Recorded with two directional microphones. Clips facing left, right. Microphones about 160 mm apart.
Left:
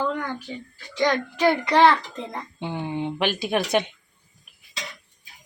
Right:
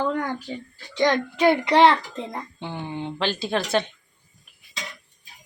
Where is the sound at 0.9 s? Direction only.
20° right (ahead or behind).